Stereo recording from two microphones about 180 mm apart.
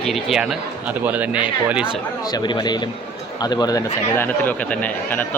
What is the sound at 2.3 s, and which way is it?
Speech, 25° left (ahead or behind).